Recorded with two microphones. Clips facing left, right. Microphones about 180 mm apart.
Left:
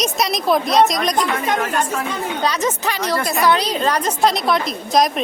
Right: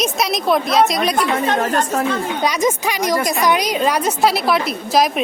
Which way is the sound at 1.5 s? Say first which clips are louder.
Right 2 dB; 35° right (ahead or behind).